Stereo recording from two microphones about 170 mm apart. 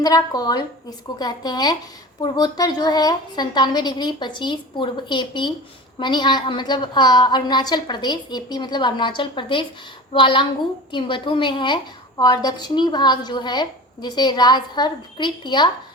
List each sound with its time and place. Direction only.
0.0 s a woman's voice: 20° left (ahead or behind)